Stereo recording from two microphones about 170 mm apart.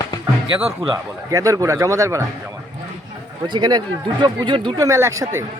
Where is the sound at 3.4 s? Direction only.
25° right (ahead or behind).